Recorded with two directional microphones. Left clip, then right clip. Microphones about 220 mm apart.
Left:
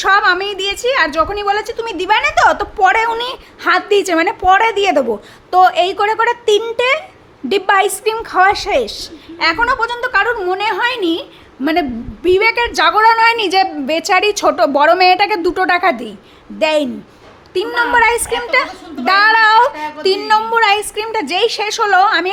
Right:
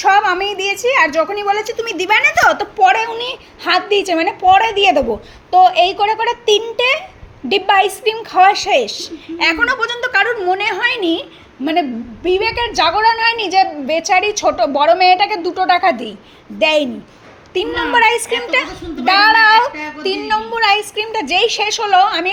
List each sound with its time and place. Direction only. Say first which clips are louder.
0.0 s a woman's voice: even; 10° left (ahead or behind)